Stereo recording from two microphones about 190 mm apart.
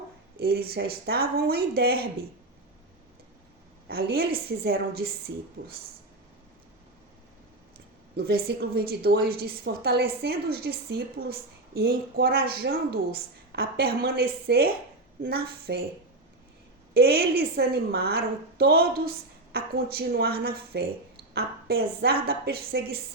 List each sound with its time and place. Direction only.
0.3 s a woman's voice: 55° right (ahead or behind)
3.8 s a woman's voice: 55° right (ahead or behind)
8.1 s a woman's voice: 55° right (ahead or behind)
16.9 s a woman's voice: 55° right (ahead or behind)